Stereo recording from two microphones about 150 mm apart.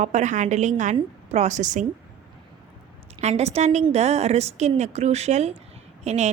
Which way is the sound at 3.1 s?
45° right (ahead or behind).